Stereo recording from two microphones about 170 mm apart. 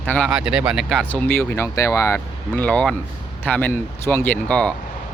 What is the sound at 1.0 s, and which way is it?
Speech, 10° left (ahead or behind).